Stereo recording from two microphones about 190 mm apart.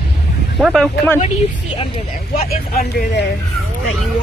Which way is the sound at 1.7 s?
30° left (ahead or behind).